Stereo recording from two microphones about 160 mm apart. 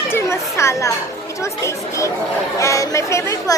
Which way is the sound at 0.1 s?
15° left (ahead or behind).